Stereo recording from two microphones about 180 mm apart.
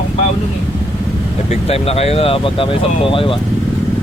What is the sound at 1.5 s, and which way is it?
Speech, 35° left (ahead or behind).